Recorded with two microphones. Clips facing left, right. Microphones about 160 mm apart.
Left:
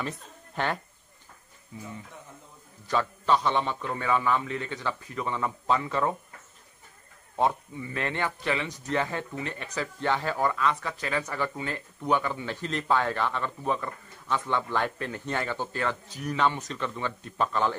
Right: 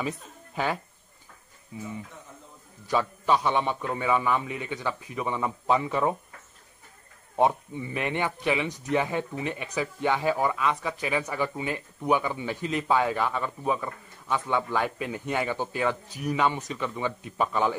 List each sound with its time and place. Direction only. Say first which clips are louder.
1.7 s speech: right 4 dB; 15° right (ahead or behind)
2.9 s speech: right 1 dB; 10° right (ahead or behind)
7.3 s speech: right 3 dB; 15° right (ahead or behind)